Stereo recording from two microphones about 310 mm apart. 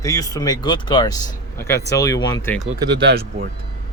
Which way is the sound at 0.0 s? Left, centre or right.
Centre.